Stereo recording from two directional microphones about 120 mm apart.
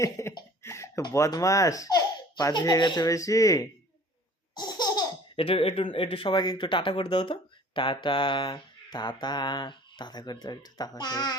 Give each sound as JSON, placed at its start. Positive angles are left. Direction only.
{"t": 0.0, "sound": "speech", "side_deg": 25}
{"t": 0.6, "sound": "a sound", "side_deg": 25}
{"t": 1.1, "sound": "speech", "side_deg": 25}
{"t": 4.5, "sound": "laughter", "side_deg": 35}
{"t": 5.4, "sound": "speech", "side_deg": 50}